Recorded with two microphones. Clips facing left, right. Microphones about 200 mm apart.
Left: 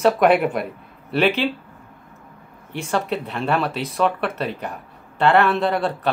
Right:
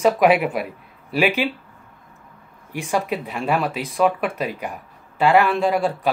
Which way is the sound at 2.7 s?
10° right (ahead or behind).